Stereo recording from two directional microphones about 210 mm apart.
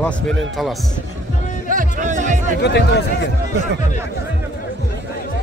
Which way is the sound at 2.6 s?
55° left (ahead or behind).